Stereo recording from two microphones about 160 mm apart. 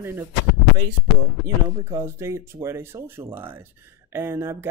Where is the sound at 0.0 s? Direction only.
15° right (ahead or behind).